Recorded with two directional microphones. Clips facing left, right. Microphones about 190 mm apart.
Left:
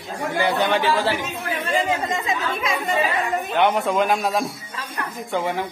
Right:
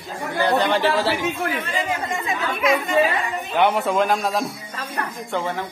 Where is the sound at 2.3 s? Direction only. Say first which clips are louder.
Right 4 dB; 35° left (ahead or behind).